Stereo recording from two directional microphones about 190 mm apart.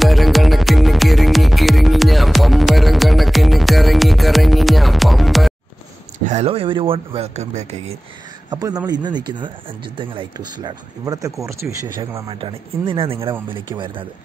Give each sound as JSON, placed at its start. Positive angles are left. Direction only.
{"t": 0.0, "sound": "music", "side_deg": 0}
{"t": 6.2, "sound": "speech", "side_deg": -35}
{"t": 8.5, "sound": "speech", "side_deg": -20}